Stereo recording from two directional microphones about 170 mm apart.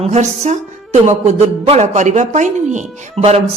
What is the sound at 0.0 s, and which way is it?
A woman's voice, 40° right (ahead or behind).